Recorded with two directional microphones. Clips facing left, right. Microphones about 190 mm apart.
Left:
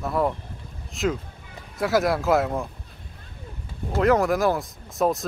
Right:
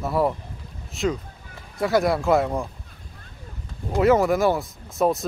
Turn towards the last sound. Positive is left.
turn(degrees=0)  # may be behind; listen again after turning